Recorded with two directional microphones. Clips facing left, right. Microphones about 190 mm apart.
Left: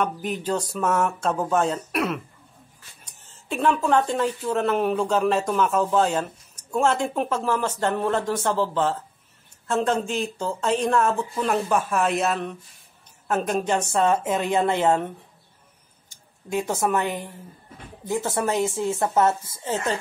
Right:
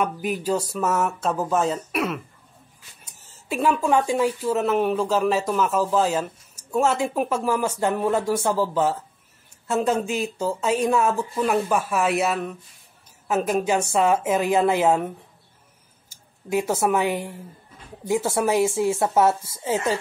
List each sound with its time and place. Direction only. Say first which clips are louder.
0.0 s speech: right 1 dB; 5° right (ahead or behind)